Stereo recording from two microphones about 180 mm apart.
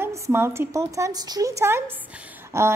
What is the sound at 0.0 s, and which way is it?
A woman's voice, 15° right (ahead or behind).